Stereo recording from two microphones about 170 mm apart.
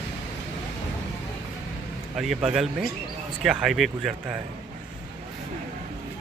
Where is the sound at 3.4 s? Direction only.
5° right (ahead or behind).